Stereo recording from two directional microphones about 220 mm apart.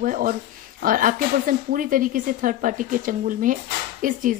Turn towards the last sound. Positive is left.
turn(degrees=-35)  # may be behind; listen again after turning